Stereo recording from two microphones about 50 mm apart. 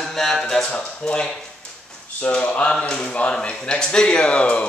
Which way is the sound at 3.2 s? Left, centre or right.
Centre.